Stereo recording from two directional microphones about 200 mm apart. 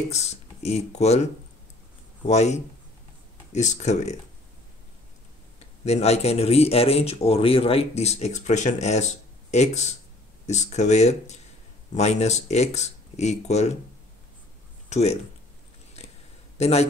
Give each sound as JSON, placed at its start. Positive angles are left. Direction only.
{"t": 0.1, "sound": "speech", "side_deg": 35}
{"t": 5.9, "sound": "speech", "side_deg": 35}
{"t": 14.9, "sound": "speech", "side_deg": 35}
{"t": 16.5, "sound": "a man's voice", "side_deg": 30}